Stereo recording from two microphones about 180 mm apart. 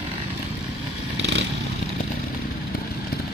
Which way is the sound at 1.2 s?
75° right (ahead or behind).